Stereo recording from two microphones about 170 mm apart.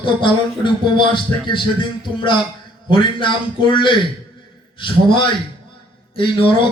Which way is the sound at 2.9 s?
30° left (ahead or behind).